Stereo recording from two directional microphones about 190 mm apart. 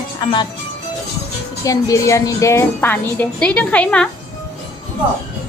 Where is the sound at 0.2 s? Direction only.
25° left (ahead or behind).